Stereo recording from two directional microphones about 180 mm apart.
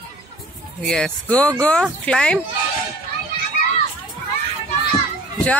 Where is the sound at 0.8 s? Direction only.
Centre (ahead or behind).